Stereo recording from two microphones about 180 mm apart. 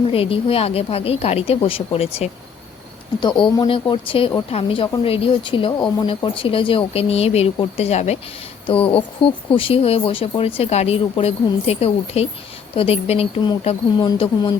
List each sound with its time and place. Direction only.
0.1 s a woman's voice: 30° left (ahead or behind)